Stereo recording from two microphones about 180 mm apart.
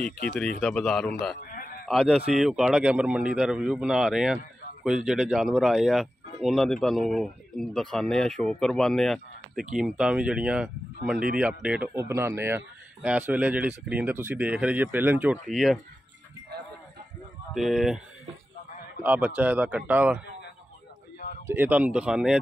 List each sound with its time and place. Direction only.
0.6 s speech: 5° left (ahead or behind)
1.5 s a sound: 50° left (ahead or behind)
1.9 s speech: centre (ahead or behind)
15.4 s speech: centre (ahead or behind)
17.6 s speech: centre (ahead or behind)
19.0 s speech: 10° right (ahead or behind)
21.5 s speech: 10° right (ahead or behind)